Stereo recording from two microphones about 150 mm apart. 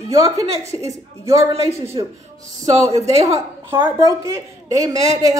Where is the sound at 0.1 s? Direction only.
20° right (ahead or behind).